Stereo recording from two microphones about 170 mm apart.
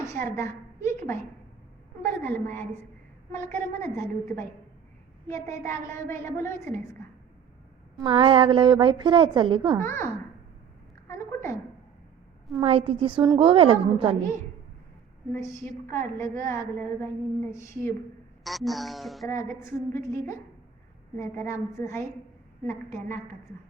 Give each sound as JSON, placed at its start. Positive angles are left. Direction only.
{"t": 0.0, "sound": "a woman's voice", "side_deg": 15}
{"t": 3.8, "sound": "a woman's voice", "side_deg": 15}
{"t": 7.9, "sound": "a woman's voice", "side_deg": -30}
{"t": 9.8, "sound": "a woman's voice", "side_deg": 15}
{"t": 11.1, "sound": "a woman's voice", "side_deg": 15}
{"t": 12.5, "sound": "a woman's voice", "side_deg": -30}
{"t": 15.3, "sound": "a woman's voice", "side_deg": 15}
{"t": 18.4, "sound": "a child's voice", "side_deg": 0}
{"t": 19.4, "sound": "a woman's voice", "side_deg": 15}